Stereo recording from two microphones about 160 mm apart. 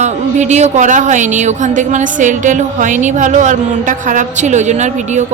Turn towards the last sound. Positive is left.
turn(degrees=-45)  # may be behind; listen again after turning